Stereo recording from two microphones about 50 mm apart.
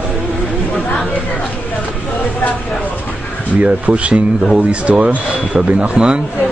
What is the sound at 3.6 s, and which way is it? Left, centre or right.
Speech, right.